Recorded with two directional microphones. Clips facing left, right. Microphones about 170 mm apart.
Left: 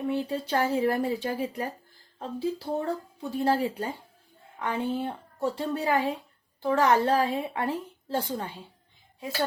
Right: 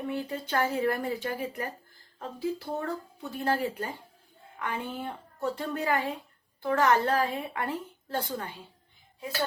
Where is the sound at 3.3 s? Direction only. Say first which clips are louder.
Left 4 dB; 30° left (ahead or behind).